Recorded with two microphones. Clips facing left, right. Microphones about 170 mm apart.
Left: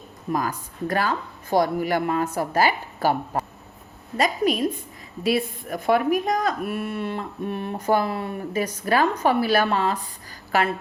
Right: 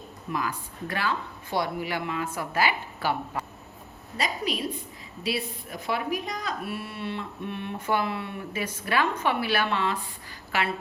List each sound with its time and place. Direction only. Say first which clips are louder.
0.3 s speech: left 5 dB; 40° left (ahead or behind)